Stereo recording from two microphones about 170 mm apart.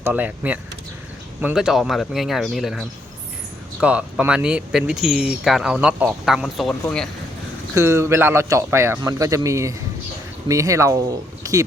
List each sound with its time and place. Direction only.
0.0 s a man's voice: 10° right (ahead or behind)
7.8 s a man's voice: 15° right (ahead or behind)
11.4 s a sound: 20° right (ahead or behind)